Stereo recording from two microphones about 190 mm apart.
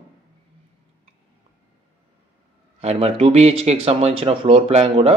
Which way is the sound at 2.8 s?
30° right (ahead or behind).